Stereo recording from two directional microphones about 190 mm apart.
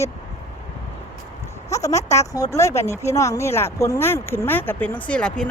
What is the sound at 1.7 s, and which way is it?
Speech, 15° left (ahead or behind).